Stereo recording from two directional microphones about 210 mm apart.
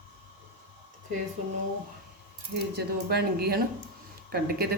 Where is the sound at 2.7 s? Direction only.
50° right (ahead or behind).